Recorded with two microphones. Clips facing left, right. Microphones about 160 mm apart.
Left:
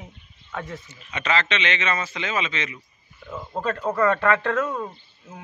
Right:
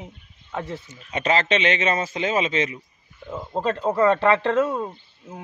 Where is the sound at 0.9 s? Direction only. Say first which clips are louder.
Right 3 dB; 45° right (ahead or behind).